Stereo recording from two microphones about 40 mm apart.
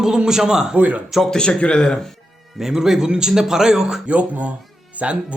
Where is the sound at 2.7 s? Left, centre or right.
Centre.